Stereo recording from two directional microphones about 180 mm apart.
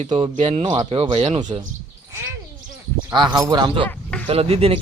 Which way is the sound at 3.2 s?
15° right (ahead or behind).